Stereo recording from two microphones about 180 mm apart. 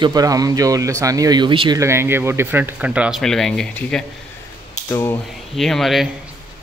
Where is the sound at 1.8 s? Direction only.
15° right (ahead or behind); by 5.2 s 15° left (ahead or behind).